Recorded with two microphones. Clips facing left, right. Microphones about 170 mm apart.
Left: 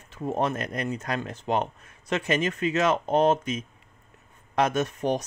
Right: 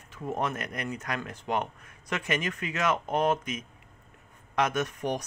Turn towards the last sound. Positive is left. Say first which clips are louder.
# left 4 dB
turn(degrees=25)  # may be behind; listen again after turning